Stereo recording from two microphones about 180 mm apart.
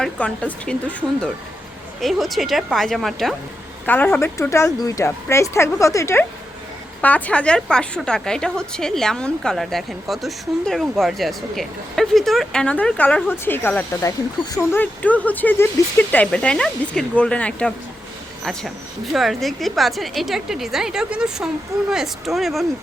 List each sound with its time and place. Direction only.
0.0 s a woman's voice: 5° left (ahead or behind)
19.1 s a woman's voice: centre (ahead or behind)